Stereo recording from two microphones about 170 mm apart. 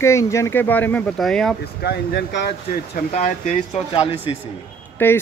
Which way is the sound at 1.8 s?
75° left (ahead or behind).